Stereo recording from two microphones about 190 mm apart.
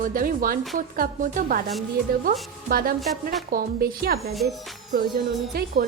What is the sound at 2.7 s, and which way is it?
Speech, 50° right (ahead or behind).